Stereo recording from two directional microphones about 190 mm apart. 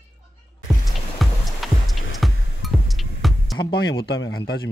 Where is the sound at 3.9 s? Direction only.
60° left (ahead or behind).